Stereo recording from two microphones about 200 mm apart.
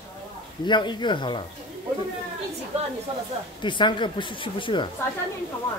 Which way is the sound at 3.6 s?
25° left (ahead or behind).